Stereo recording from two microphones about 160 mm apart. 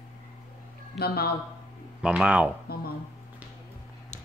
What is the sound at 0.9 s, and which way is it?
Speech, 75° left (ahead or behind).